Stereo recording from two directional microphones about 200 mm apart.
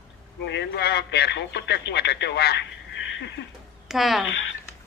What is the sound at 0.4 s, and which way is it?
Speech, 60° left (ahead or behind).